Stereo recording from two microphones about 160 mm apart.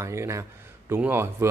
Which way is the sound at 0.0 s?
15° right (ahead or behind).